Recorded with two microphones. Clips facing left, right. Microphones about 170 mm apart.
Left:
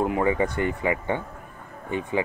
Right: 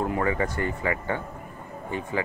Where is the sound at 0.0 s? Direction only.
20° left (ahead or behind).